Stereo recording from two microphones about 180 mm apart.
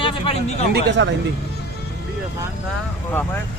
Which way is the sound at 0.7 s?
75° right (ahead or behind).